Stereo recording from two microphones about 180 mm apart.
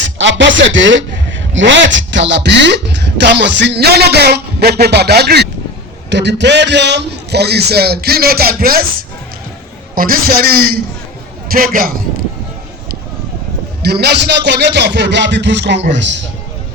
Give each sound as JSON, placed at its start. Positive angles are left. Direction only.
{"t": 0.2, "sound": "a man's voice", "side_deg": -90}
{"t": 13.8, "sound": "a man's voice", "side_deg": -65}